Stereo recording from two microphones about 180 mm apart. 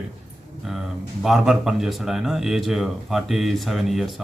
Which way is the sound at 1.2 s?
Centre (ahead or behind).